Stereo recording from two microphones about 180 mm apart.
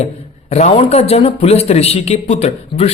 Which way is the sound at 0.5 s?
35° left (ahead or behind).